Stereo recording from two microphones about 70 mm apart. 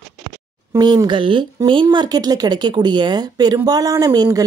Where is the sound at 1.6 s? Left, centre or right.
Right.